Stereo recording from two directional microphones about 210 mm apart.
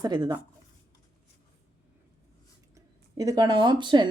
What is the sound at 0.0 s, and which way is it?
Speech, 20° right (ahead or behind).